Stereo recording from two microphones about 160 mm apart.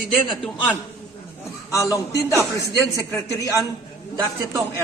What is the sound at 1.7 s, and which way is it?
Speech, 20° left (ahead or behind).